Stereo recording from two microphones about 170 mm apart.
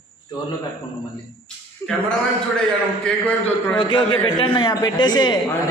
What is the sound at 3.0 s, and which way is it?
Speech, 5° left (ahead or behind).